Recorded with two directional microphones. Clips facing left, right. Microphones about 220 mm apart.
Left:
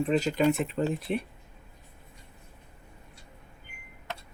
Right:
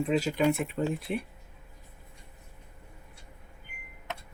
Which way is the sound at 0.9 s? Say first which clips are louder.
Left 2 dB; 25° left (ahead or behind).